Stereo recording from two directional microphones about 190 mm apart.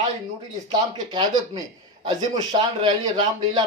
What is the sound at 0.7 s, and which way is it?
Speech, 20° right (ahead or behind).